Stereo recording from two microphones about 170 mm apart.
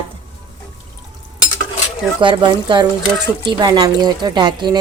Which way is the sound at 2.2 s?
25° right (ahead or behind).